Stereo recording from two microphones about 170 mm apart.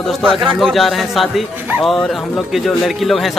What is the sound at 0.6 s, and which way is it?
A man's voice, centre (ahead or behind).